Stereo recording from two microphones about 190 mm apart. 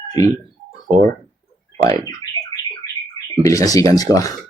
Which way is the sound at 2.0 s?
15° left (ahead or behind).